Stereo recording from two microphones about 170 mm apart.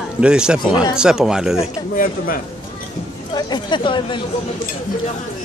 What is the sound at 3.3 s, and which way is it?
Speech, 25° left (ahead or behind).